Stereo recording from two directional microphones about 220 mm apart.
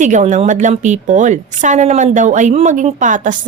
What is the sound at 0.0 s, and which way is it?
A woman's voice, 35° right (ahead or behind).